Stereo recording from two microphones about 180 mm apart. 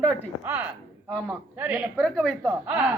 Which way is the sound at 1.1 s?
5° left (ahead or behind).